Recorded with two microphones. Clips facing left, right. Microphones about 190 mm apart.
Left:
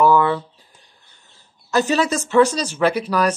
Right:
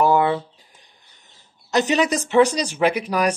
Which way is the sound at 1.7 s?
20° right (ahead or behind).